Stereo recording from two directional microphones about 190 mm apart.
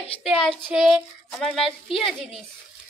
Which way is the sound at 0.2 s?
Centre (ahead or behind).